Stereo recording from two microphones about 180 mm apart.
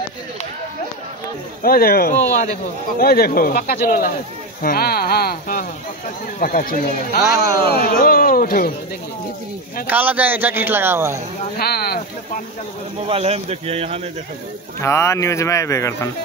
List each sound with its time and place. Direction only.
1.6 s speech: 55° left (ahead or behind)
7.2 s speech: 20° right (ahead or behind)
7.7 s speech: 55° left (ahead or behind)
9.8 s a man's voice: 10° right (ahead or behind)
11.5 s speech: 60° left (ahead or behind)
13.1 s speech: 35° right (ahead or behind)
14.8 s speech: 15° left (ahead or behind)